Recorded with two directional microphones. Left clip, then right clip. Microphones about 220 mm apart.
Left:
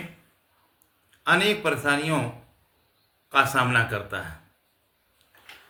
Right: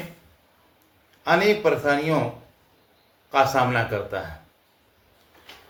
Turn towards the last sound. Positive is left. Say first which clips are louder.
# even
turn(degrees=20)  # may be behind; listen again after turning